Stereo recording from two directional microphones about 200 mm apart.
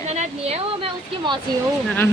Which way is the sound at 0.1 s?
35° right (ahead or behind).